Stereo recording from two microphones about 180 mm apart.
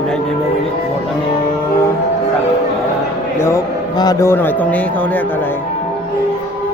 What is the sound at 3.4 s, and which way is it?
A man's voice, 15° left (ahead or behind).